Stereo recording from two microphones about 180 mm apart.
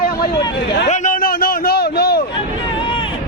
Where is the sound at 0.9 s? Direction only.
45° left (ahead or behind); by 2.2 s 65° left (ahead or behind).